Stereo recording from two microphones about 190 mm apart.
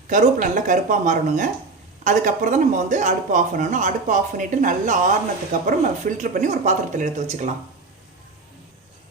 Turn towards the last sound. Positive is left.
turn(degrees=-40)  # may be behind; listen again after turning